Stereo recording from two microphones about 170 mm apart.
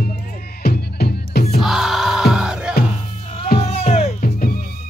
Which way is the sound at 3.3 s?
35° left (ahead or behind).